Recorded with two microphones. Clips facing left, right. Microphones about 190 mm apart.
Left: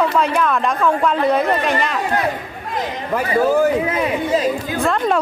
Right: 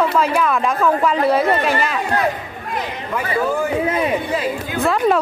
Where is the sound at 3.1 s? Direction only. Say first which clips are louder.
Left 4 dB; 40° left (ahead or behind).